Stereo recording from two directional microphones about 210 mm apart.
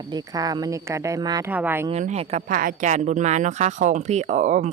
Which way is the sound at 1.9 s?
30° right (ahead or behind).